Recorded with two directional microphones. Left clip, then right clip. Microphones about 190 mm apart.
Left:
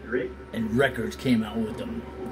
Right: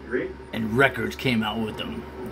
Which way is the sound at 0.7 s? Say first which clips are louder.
Right 4 dB; 30° right (ahead or behind).